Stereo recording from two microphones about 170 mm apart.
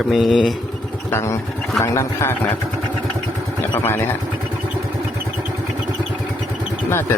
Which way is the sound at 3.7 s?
15° left (ahead or behind).